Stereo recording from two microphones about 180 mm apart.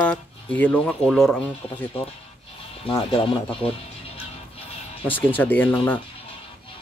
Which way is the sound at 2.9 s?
30° left (ahead or behind).